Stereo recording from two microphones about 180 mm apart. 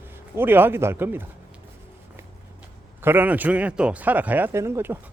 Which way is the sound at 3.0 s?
10° right (ahead or behind).